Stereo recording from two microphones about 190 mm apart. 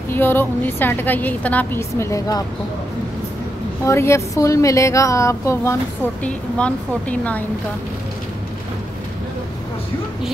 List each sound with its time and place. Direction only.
0.1 s a woman's voice: 10° left (ahead or behind)
3.8 s a woman's voice: 15° left (ahead or behind)